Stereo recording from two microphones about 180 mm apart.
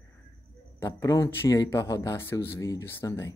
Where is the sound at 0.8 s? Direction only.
15° left (ahead or behind).